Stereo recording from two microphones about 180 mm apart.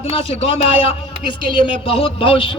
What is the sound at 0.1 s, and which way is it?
A man's voice, 30° left (ahead or behind).